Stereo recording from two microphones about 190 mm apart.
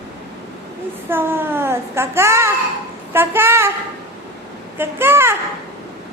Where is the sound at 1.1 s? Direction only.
10° right (ahead or behind).